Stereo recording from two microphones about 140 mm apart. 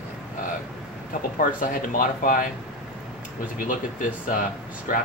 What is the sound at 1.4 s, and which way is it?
Speech, 75° left (ahead or behind).